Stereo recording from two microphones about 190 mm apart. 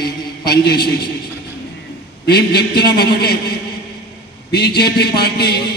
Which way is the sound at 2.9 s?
55° left (ahead or behind).